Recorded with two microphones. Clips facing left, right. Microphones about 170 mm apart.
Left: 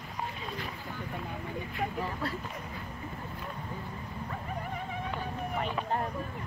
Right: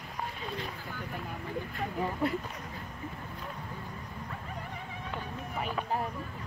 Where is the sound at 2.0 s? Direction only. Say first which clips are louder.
Right 4 dB; 15° right (ahead or behind).